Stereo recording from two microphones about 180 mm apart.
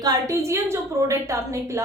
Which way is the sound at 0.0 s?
15° right (ahead or behind).